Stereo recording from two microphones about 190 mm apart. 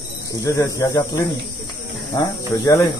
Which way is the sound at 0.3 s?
15° left (ahead or behind).